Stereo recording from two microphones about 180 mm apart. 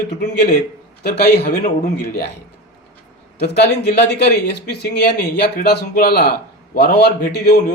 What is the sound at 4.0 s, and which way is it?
Speech, 65° left (ahead or behind).